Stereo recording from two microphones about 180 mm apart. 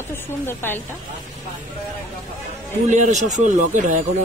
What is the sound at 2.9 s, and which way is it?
Speech, 40° right (ahead or behind).